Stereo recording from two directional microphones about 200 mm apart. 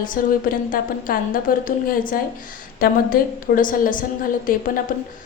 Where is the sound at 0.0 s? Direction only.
45° left (ahead or behind).